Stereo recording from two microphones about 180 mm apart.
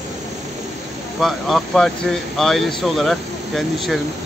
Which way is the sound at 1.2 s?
Centre (ahead or behind).